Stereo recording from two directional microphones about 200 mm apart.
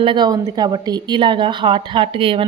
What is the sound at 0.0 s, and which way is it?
A woman's voice, 25° right (ahead or behind).